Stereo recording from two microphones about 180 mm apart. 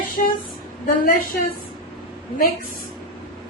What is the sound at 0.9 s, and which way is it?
Speech, 55° left (ahead or behind).